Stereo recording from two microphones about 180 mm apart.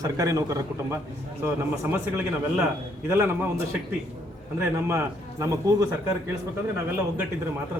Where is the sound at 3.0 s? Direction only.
15° right (ahead or behind).